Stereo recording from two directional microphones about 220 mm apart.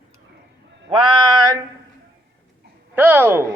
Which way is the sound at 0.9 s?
15° right (ahead or behind).